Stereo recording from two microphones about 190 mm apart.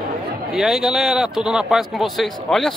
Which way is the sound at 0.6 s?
Centre (ahead or behind).